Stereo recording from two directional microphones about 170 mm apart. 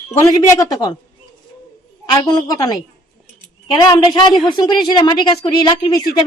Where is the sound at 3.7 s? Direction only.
25° left (ahead or behind).